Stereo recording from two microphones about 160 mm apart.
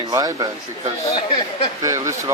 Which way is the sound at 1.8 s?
20° right (ahead or behind).